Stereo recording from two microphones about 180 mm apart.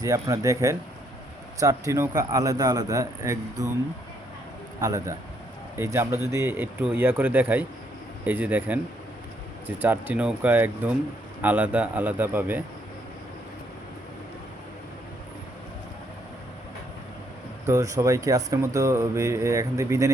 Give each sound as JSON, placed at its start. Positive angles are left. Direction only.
{"t": 0.0, "sound": "speech", "side_deg": -20}
{"t": 4.8, "sound": "speech", "side_deg": -15}
{"t": 17.7, "sound": "speech", "side_deg": -20}